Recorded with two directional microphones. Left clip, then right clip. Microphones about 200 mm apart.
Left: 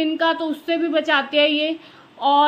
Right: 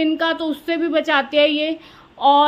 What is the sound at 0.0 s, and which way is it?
Speech, 25° right (ahead or behind).